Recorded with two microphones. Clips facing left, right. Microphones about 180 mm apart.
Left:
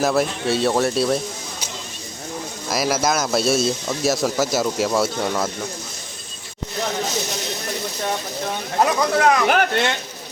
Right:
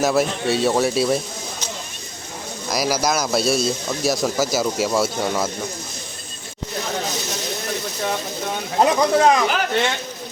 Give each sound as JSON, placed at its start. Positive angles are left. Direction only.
{"t": 0.0, "sound": "speech", "side_deg": 0}
{"t": 2.6, "sound": "speech", "side_deg": 0}
{"t": 8.8, "sound": "speech", "side_deg": -20}